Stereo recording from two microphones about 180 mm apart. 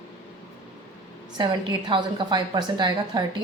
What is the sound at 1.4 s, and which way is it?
A woman's voice, 25° right (ahead or behind).